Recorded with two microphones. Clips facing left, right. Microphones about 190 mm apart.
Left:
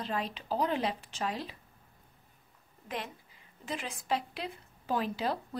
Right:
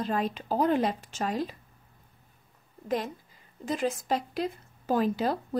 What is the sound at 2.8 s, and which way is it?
A woman's voice, 40° right (ahead or behind).